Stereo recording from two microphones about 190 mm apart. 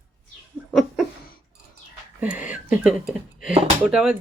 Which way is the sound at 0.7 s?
Centre (ahead or behind).